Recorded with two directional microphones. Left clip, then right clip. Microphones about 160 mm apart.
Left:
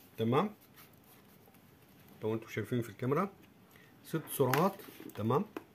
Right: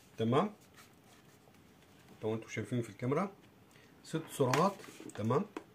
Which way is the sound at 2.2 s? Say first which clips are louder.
Left 1 dB; 50° left (ahead or behind).